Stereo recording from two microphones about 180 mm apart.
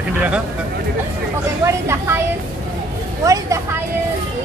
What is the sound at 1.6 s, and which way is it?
Speech, 15° right (ahead or behind).